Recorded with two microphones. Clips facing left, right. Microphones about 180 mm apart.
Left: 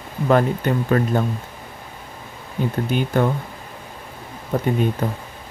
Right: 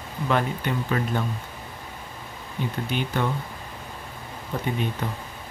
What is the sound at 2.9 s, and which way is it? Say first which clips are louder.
Speech: left 7 dB; 45° left (ahead or behind).